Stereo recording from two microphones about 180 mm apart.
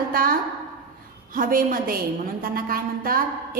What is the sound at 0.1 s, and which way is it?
A woman's voice, 50° right (ahead or behind).